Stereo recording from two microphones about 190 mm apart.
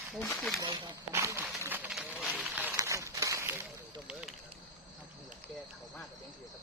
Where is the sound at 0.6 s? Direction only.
15° right (ahead or behind).